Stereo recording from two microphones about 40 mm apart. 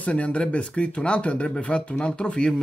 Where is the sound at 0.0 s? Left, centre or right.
Left.